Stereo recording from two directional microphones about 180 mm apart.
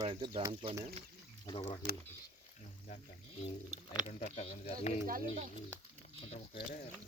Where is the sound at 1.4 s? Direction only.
30° left (ahead or behind).